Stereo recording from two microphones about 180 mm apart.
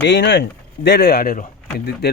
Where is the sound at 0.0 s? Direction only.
75° left (ahead or behind).